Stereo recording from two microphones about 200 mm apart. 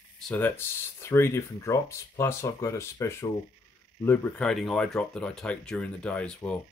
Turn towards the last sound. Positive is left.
turn(degrees=5)  # may be behind; listen again after turning